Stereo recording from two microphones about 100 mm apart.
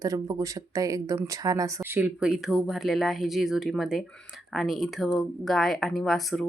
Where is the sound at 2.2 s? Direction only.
5° right (ahead or behind).